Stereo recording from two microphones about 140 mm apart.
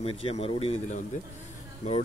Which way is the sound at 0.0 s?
45° left (ahead or behind).